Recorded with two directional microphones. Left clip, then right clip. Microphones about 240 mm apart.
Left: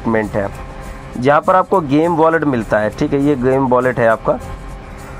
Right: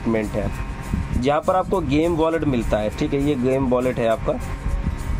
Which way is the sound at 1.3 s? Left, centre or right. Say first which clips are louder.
Left 8 dB; centre.